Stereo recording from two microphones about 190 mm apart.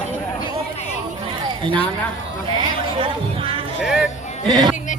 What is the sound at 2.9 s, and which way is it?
Music, 30° right (ahead or behind).